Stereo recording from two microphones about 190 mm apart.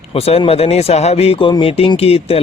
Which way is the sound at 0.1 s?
30° left (ahead or behind).